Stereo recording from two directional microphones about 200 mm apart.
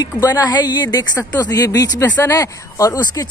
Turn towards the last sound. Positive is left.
turn(degrees=15)  # may be behind; listen again after turning